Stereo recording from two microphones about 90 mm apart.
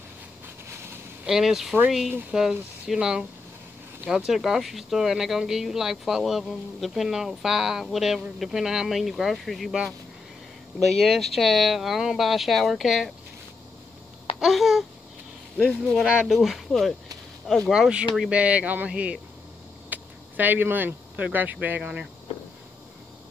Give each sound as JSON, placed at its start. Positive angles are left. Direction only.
{"t": 1.2, "sound": "speech", "side_deg": -5}
{"t": 14.4, "sound": "speech", "side_deg": 0}
{"t": 16.1, "sound": "speech", "side_deg": -5}
{"t": 17.7, "sound": "speech", "side_deg": -10}